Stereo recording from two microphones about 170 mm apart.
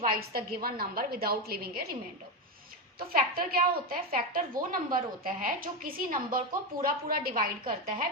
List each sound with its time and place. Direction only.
0.3 s speech: 60° right (ahead or behind)
3.0 s speech: 60° right (ahead or behind)